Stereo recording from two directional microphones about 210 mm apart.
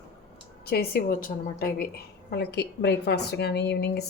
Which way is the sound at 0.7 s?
45° left (ahead or behind).